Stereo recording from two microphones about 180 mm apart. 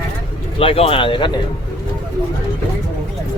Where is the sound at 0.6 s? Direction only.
30° left (ahead or behind).